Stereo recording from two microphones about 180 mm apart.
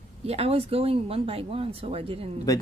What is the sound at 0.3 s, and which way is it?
Speech, 35° right (ahead or behind).